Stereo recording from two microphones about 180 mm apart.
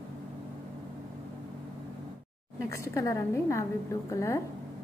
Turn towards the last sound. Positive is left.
turn(degrees=15)  # may be behind; listen again after turning